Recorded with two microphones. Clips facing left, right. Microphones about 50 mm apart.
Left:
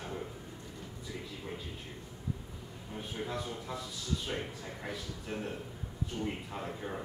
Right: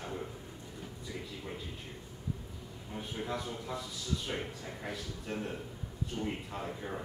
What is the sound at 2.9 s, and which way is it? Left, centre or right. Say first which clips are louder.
A man's voice: even; centre.